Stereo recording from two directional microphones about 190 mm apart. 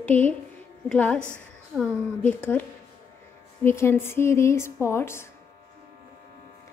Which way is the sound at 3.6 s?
15° left (ahead or behind).